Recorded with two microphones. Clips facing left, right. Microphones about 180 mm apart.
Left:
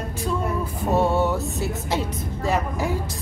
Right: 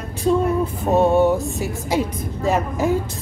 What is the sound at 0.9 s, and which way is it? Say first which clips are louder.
A woman's voice: right 5 dB; 15° right (ahead or behind).